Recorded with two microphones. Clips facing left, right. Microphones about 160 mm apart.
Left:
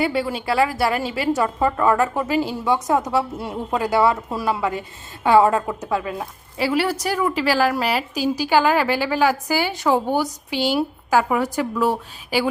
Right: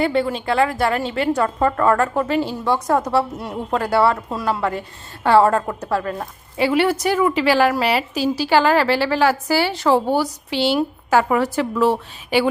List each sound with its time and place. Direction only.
0.0 s a woman's voice: 5° left (ahead or behind)
2.6 s a woman's voice: 20° left (ahead or behind)
3.3 s speech: 5° left (ahead or behind)
3.8 s a woman's voice: 15° left (ahead or behind)
4.3 s a woman's voice: 5° left (ahead or behind)